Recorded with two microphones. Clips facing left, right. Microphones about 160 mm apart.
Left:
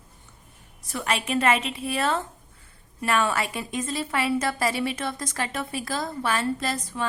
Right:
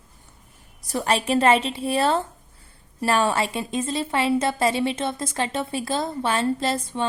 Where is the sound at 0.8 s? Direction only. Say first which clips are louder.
Right 5 dB; 35° right (ahead or behind).